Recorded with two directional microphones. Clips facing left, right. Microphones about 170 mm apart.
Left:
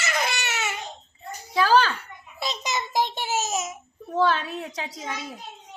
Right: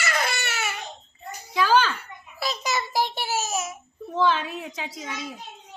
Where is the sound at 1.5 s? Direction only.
40° left (ahead or behind).